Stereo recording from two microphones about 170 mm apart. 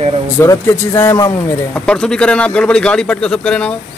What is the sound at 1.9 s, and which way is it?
Speech, 5° left (ahead or behind).